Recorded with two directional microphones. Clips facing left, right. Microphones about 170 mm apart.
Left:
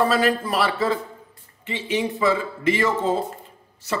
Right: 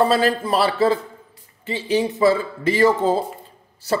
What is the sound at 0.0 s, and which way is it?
Speech, 30° right (ahead or behind).